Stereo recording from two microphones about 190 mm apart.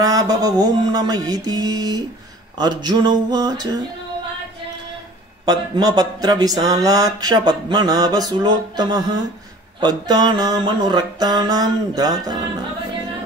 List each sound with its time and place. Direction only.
0.0 s speech: 20° right (ahead or behind)
5.4 s speech: 20° right (ahead or behind)